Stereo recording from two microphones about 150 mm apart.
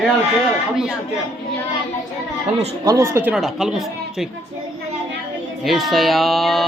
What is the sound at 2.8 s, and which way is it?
Speech, 20° right (ahead or behind).